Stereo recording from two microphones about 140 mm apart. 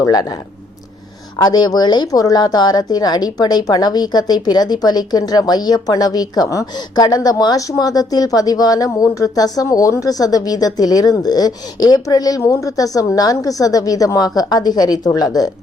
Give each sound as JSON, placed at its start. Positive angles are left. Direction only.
{"t": 0.0, "sound": "speech", "side_deg": 25}
{"t": 1.4, "sound": "speech", "side_deg": 30}